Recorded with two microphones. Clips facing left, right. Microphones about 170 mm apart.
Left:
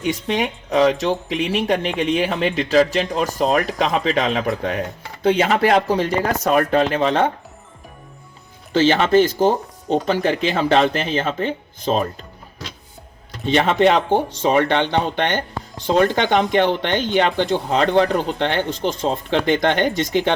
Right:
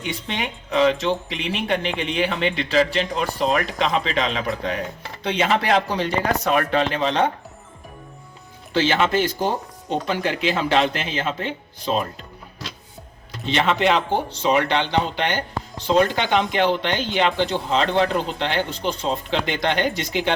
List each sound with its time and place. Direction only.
0.0 s a man's voice: 45° left (ahead or behind)
8.7 s a man's voice: 45° left (ahead or behind)
13.4 s speech: 40° left (ahead or behind)